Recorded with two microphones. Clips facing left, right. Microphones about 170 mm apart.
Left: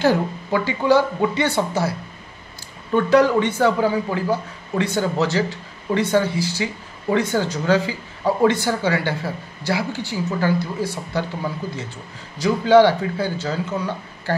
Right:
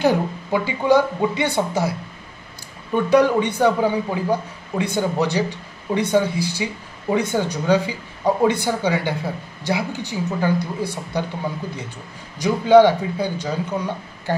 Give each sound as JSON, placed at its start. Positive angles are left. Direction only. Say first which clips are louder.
{"t": 0.0, "sound": "a man's voice", "louder": "even", "side_deg": -15}
{"t": 3.1, "sound": "a man's voice", "louder": "even", "side_deg": -20}
{"t": 12.4, "sound": "a man's voice", "louder": "right 1 dB", "side_deg": -15}